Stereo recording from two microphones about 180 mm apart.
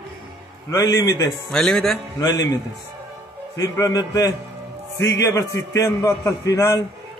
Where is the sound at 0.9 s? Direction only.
20° left (ahead or behind).